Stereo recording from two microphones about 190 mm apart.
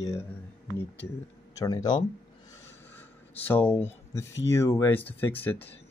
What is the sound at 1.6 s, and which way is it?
Speech, 20° left (ahead or behind).